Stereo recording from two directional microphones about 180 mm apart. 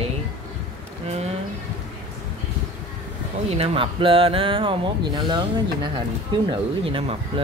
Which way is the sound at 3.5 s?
30° right (ahead or behind).